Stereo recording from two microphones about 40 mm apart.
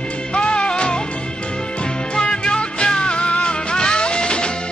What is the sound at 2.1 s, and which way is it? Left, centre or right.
Music, left.